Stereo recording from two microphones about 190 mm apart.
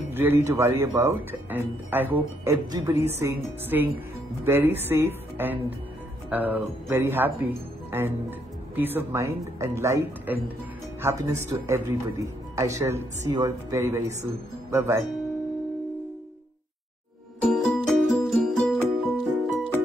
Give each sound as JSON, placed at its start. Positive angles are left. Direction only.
{"t": 0.1, "sound": "speech", "side_deg": -10}
{"t": 17.4, "sound": "music", "side_deg": 0}